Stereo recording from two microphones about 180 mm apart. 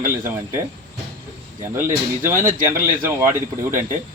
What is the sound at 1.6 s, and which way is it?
A man's voice, 15° right (ahead or behind).